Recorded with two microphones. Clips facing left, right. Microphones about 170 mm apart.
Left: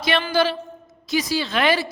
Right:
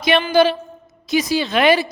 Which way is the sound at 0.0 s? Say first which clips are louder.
Right 6 dB; 20° right (ahead or behind).